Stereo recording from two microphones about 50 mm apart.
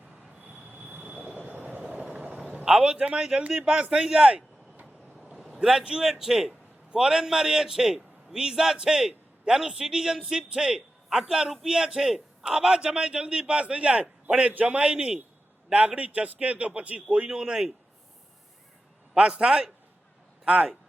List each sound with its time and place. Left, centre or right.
0.5 s train wheels squealing: right
1.2 s train: right
1.8 s a sound: right
3.5 s a man's voice: centre
5.6 s a man's voice: centre
19.1 s a man's voice: right